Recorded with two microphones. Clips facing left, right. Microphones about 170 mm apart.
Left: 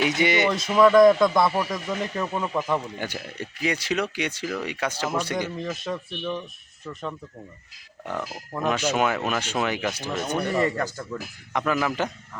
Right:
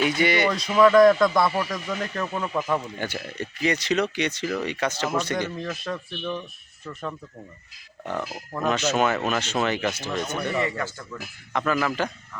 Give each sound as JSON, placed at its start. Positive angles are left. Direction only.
{"t": 0.2, "sound": "speech", "side_deg": 20}
{"t": 0.5, "sound": "speech", "side_deg": 0}
{"t": 8.5, "sound": "speech", "side_deg": 10}
{"t": 10.6, "sound": "speech", "side_deg": 40}
{"t": 11.5, "sound": "speech", "side_deg": 15}